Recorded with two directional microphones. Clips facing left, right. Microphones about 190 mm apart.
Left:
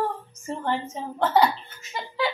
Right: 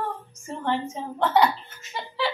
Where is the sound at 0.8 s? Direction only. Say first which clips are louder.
Even; centre (ahead or behind).